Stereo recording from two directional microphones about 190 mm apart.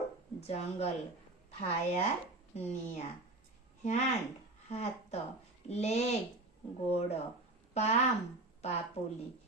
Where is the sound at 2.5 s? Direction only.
35° left (ahead or behind).